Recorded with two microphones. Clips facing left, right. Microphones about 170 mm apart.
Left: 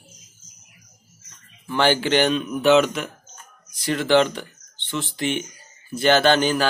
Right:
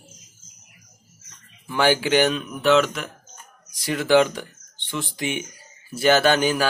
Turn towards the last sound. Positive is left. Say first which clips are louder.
# left 1 dB
turn(degrees=-10)  # may be behind; listen again after turning